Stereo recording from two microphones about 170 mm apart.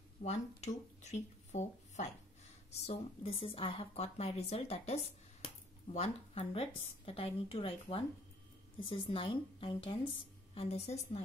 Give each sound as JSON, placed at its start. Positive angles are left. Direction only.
{"t": 0.2, "sound": "a woman's voice", "side_deg": 40}